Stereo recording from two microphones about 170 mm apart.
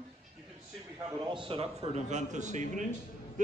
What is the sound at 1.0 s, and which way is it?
Speech, 25° right (ahead or behind).